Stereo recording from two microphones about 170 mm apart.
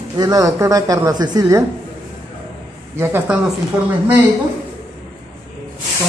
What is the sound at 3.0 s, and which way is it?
Speech, 15° right (ahead or behind).